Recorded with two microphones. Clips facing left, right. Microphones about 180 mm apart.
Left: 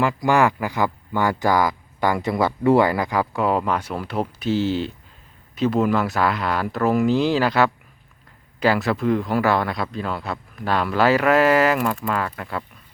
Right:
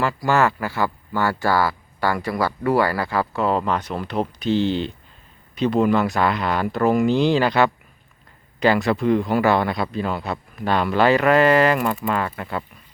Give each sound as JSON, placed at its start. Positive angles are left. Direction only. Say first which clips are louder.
{"t": 0.0, "sound": "speech", "louder": "left 1 dB", "side_deg": 15}